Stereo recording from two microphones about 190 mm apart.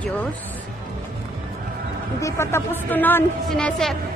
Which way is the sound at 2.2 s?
15° left (ahead or behind).